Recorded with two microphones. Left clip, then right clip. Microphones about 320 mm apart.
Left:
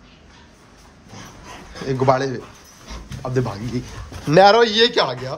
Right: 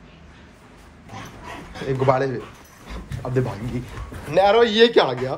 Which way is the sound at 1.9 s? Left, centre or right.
Centre.